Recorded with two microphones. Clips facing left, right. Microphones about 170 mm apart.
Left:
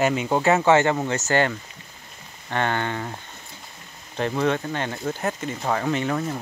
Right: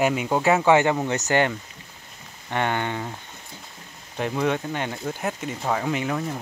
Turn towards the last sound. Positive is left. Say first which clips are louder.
# left 2 dB
turn(degrees=-5)  # may be behind; listen again after turning